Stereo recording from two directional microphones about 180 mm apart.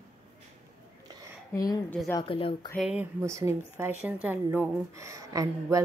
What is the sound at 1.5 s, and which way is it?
A woman's voice, 20° left (ahead or behind).